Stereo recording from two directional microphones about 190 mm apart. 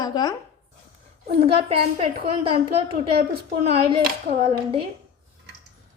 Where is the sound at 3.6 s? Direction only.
30° right (ahead or behind).